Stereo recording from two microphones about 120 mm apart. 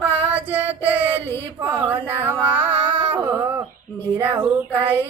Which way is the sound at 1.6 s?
15° right (ahead or behind).